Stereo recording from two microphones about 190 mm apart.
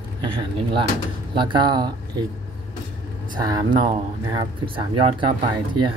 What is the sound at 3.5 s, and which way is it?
Speech, 20° right (ahead or behind).